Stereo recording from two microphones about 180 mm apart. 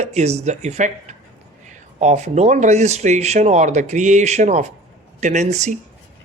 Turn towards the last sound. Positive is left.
turn(degrees=-40)  # may be behind; listen again after turning